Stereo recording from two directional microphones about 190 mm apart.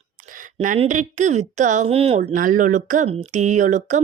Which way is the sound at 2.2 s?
45° right (ahead or behind).